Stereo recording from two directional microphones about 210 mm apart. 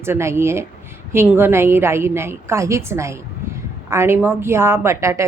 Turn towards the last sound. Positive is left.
turn(degrees=-15)  # may be behind; listen again after turning